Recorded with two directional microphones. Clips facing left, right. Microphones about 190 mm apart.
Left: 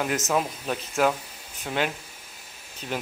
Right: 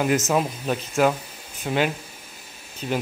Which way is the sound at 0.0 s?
5° right (ahead or behind).